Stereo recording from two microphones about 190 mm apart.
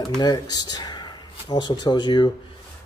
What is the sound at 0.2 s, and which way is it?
Speech, 20° left (ahead or behind).